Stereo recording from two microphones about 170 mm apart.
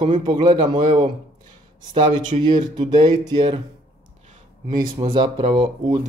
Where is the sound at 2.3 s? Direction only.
30° right (ahead or behind).